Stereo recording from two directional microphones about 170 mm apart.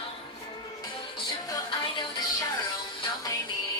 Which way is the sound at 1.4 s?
20° left (ahead or behind).